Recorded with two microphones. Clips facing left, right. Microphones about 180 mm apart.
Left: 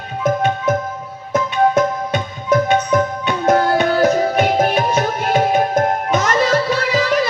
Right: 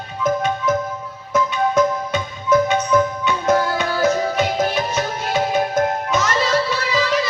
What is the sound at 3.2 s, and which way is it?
Music, 55° left (ahead or behind).